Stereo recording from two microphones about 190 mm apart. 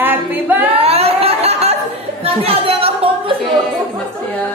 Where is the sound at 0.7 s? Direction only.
30° right (ahead or behind).